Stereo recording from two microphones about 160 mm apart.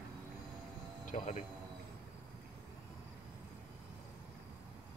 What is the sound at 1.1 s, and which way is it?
Speech, 45° left (ahead or behind).